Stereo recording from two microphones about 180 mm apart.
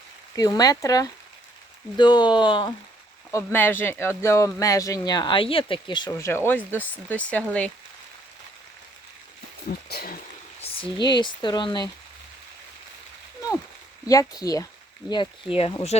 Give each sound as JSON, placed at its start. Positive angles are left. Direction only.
{"t": 0.3, "sound": "speech", "side_deg": 20}
{"t": 3.3, "sound": "speech", "side_deg": 10}
{"t": 9.6, "sound": "speech", "side_deg": 55}
{"t": 10.6, "sound": "speech", "side_deg": 30}
{"t": 14.1, "sound": "speech", "side_deg": 20}